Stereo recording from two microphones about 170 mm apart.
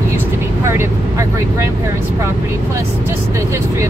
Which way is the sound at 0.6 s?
15° right (ahead or behind).